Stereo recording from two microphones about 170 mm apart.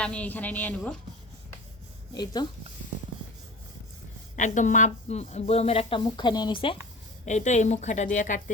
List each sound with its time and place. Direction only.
0.0 s a woman's voice: 5° left (ahead or behind)
2.1 s speech: 25° left (ahead or behind)
4.4 s speech: 45° left (ahead or behind); by 6.7 s 30° left (ahead or behind)
7.3 s a woman's voice: 45° left (ahead or behind)